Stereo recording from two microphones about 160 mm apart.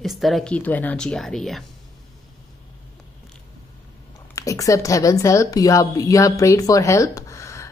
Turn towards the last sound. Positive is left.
turn(degrees=20)  # may be behind; listen again after turning